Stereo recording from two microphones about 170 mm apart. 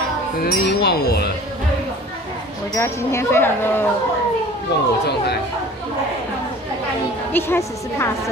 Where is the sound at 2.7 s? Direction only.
15° left (ahead or behind).